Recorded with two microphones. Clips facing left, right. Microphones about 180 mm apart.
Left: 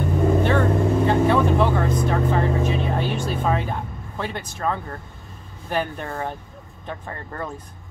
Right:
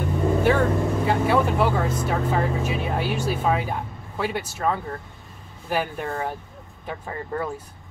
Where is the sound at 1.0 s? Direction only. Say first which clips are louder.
Left 2 dB; 5° right (ahead or behind).